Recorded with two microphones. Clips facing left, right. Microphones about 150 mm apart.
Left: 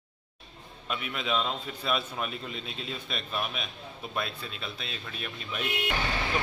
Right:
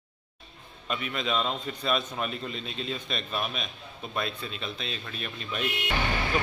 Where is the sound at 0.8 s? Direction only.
5° left (ahead or behind).